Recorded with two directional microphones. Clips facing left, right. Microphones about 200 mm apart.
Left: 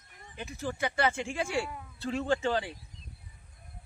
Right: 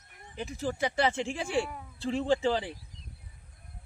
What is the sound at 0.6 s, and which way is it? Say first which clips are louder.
Speech: right 2 dB; 35° right (ahead or behind).